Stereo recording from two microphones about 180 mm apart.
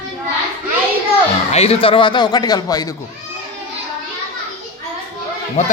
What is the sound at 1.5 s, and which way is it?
Speech, 35° left (ahead or behind).